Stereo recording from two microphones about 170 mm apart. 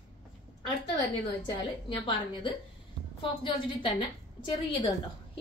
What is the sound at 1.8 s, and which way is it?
Speech, 30° left (ahead or behind).